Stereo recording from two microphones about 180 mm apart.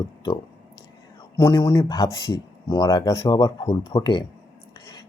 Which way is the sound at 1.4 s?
15° left (ahead or behind).